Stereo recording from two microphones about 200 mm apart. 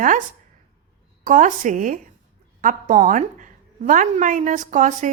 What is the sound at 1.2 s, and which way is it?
A woman's voice, 40° right (ahead or behind).